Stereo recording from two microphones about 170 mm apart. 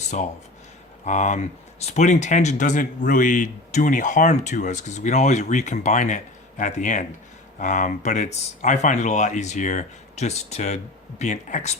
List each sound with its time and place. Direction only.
1.0 s speech: 45° left (ahead or behind)